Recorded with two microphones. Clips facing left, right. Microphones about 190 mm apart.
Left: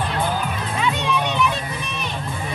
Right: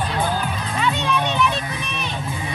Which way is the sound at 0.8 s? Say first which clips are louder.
Right 1 dB; 10° left (ahead or behind).